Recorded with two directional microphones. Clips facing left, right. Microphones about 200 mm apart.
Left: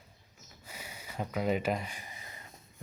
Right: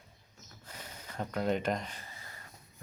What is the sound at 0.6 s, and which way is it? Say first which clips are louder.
Speech: left 1 dB; 10° left (ahead or behind).